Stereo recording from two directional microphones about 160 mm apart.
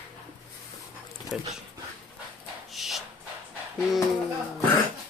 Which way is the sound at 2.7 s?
Centre (ahead or behind).